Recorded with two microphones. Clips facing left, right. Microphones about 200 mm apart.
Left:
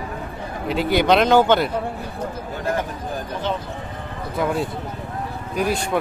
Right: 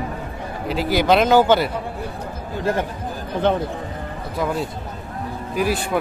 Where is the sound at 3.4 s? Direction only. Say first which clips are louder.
Right 7 dB; 55° right (ahead or behind).